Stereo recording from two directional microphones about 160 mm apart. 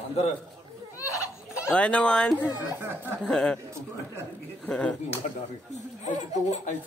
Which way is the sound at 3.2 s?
5° left (ahead or behind).